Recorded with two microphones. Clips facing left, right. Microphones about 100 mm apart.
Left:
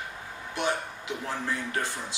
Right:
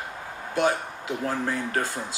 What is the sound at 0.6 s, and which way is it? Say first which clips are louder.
Speech: right 6 dB; 45° right (ahead or behind).